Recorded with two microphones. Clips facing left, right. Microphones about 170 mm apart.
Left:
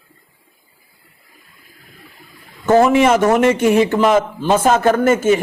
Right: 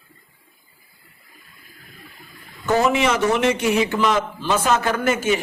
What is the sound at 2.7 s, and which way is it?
A man's voice, 50° left (ahead or behind).